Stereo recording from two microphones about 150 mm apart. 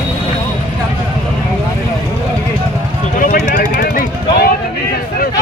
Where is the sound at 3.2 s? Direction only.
70° left (ahead or behind).